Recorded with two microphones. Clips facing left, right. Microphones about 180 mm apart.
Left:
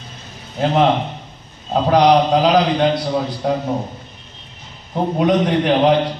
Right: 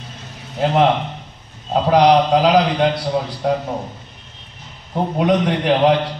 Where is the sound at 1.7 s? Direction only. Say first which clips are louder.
Even; 5° right (ahead or behind).